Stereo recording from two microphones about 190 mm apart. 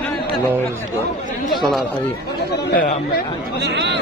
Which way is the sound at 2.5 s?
60° left (ahead or behind).